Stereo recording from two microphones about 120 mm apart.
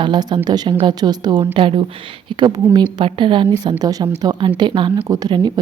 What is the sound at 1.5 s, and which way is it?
A woman's voice, 45° right (ahead or behind).